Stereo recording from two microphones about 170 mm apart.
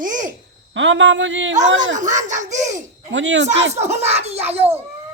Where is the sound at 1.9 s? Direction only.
45° right (ahead or behind).